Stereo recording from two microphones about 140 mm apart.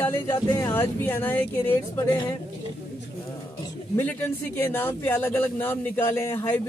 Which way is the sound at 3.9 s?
15° left (ahead or behind).